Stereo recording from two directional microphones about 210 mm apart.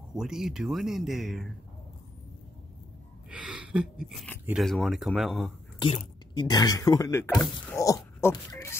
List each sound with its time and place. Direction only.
0.1 s speech: 5° right (ahead or behind)
3.3 s a sound: 5° right (ahead or behind)
4.5 s speech: centre (ahead or behind)
5.8 s speech: 25° left (ahead or behind)